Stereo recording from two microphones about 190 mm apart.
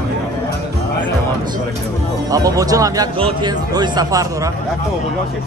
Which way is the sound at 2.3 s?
20° right (ahead or behind).